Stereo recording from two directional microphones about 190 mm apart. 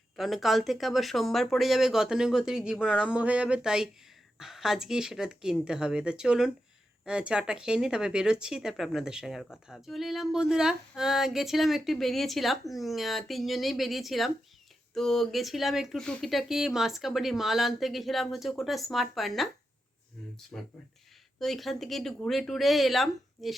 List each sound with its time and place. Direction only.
0.2 s speech: centre (ahead or behind)
20.5 s speech: 5° left (ahead or behind)